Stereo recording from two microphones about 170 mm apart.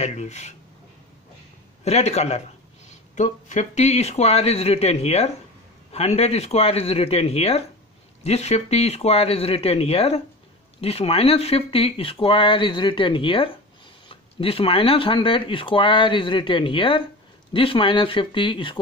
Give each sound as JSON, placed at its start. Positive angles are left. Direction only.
{"t": 0.0, "sound": "speech", "side_deg": 40}
{"t": 1.9, "sound": "speech", "side_deg": 40}